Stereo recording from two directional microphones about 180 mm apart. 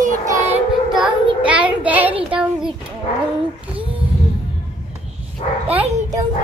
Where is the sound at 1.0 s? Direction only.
5° right (ahead or behind).